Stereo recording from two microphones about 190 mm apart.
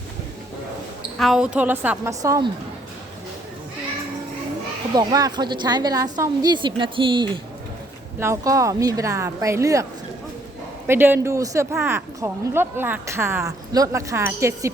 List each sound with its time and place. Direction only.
1.2 s speech: centre (ahead or behind)
4.9 s a woman's voice: 20° right (ahead or behind)
8.2 s speech: 15° right (ahead or behind)
10.8 s speech: 10° right (ahead or behind)